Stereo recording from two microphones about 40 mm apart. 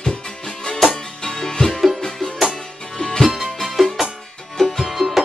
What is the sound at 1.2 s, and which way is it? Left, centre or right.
Music, centre.